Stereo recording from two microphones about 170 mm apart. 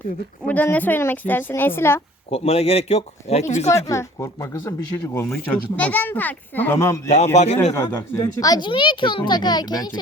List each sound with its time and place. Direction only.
0.4 s speech: 10° left (ahead or behind)
2.3 s speech: 35° left (ahead or behind)
3.7 s speech: 15° left (ahead or behind)
7.3 s speech: 40° left (ahead or behind)
7.7 s a child's voice: 15° left (ahead or behind)